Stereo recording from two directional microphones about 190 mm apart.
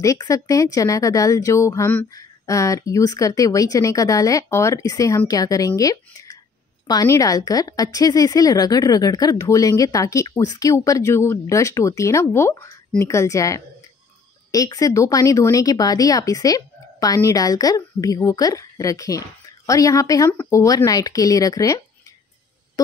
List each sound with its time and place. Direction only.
0.0 s a woman's voice: 15° left (ahead or behind)